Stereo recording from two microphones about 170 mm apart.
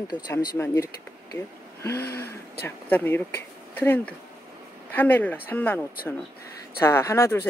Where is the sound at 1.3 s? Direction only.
15° left (ahead or behind).